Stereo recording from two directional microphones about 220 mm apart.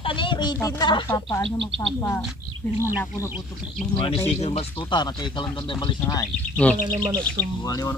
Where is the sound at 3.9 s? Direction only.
25° left (ahead or behind).